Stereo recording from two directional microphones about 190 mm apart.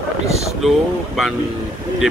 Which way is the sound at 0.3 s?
35° right (ahead or behind).